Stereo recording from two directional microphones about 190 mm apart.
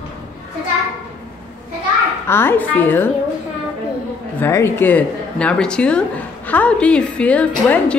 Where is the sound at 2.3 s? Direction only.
10° left (ahead or behind).